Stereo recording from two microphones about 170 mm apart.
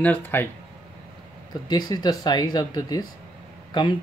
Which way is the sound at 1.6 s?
25° left (ahead or behind).